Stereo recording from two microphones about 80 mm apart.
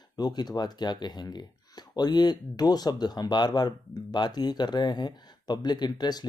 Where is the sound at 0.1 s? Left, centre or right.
Left.